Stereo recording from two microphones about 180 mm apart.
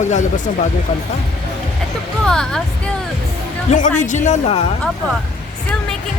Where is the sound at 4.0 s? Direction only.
40° left (ahead or behind).